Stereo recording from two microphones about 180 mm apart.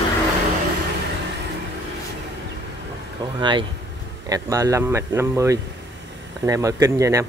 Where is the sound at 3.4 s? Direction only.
25° right (ahead or behind).